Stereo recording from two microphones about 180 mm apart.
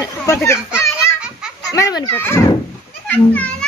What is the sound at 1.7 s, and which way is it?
A child's voice, 20° left (ahead or behind).